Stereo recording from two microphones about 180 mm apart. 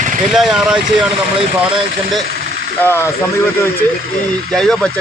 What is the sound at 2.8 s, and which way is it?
Speech, 15° left (ahead or behind).